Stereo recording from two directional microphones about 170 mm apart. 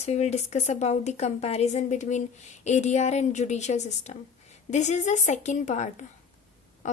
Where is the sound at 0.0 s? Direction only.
40° left (ahead or behind).